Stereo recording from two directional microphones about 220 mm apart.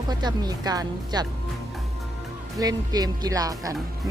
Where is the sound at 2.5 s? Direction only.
15° right (ahead or behind).